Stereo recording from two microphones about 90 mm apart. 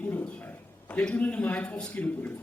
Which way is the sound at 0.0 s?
20° left (ahead or behind).